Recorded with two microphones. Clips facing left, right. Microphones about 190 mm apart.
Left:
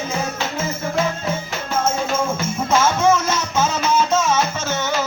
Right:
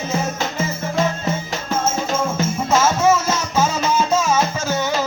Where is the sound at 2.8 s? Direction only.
5° right (ahead or behind).